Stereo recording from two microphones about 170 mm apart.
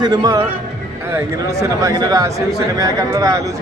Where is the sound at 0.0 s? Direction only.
25° right (ahead or behind).